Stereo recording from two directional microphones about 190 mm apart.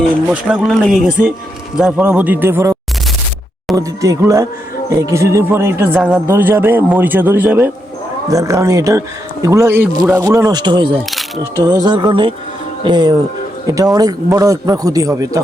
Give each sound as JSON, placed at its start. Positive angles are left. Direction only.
{"t": 0.3, "sound": "speech", "side_deg": -5}
{"t": 3.8, "sound": "speech", "side_deg": -20}